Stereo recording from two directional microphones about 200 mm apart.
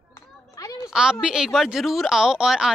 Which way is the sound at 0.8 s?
5° right (ahead or behind).